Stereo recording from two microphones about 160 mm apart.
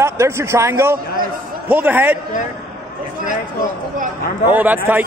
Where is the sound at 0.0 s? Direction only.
15° right (ahead or behind).